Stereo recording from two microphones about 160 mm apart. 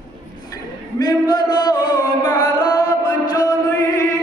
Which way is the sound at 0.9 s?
25° left (ahead or behind).